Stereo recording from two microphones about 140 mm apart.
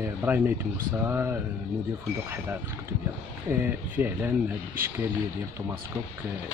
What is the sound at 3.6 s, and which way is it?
Speech, 15° right (ahead or behind).